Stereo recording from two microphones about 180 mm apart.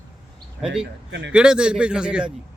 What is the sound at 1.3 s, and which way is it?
A man's voice, 5° right (ahead or behind).